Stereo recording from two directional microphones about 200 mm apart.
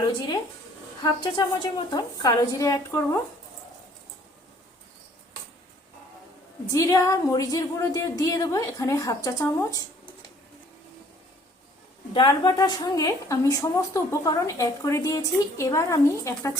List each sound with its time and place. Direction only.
1.0 s a woman's voice: 20° left (ahead or behind)
6.7 s speech: 15° left (ahead or behind)
12.1 s speech: 20° left (ahead or behind)